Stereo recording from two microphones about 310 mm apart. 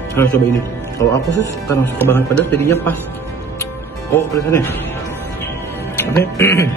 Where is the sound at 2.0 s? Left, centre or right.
Centre.